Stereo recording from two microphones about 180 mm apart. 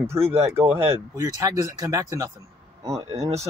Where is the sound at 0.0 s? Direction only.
15° right (ahead or behind).